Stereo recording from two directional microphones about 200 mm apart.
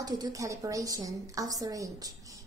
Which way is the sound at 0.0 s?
20° right (ahead or behind).